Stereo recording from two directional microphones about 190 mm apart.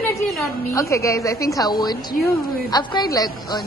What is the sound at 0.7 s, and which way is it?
A woman's voice, 15° left (ahead or behind).